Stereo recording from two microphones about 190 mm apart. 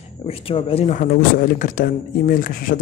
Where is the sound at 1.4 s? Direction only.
45° left (ahead or behind).